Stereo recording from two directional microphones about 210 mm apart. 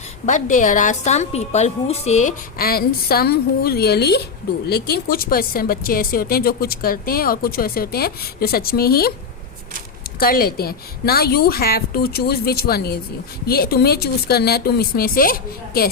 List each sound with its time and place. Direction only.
0.3 s a woman's voice: 35° left (ahead or behind)
10.2 s speech: 45° left (ahead or behind)